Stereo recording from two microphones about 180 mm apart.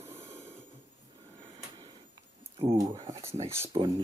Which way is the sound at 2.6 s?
30° right (ahead or behind).